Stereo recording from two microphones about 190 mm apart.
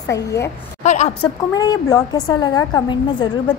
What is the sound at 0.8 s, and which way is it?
Speech, 35° left (ahead or behind).